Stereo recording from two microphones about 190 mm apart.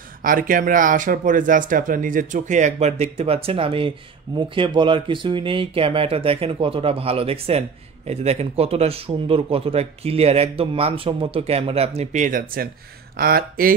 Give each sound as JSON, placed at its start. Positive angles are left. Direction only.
{"t": 0.2, "sound": "speech", "side_deg": -45}